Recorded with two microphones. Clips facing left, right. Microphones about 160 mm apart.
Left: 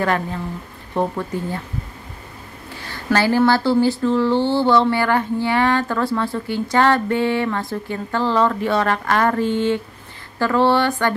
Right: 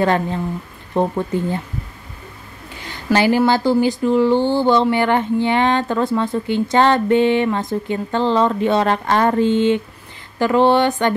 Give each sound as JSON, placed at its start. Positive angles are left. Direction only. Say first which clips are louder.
{"t": 0.0, "sound": "speech", "louder": "right 4 dB", "side_deg": -25}
{"t": 2.8, "sound": "speech", "louder": "right 2 dB", "side_deg": -20}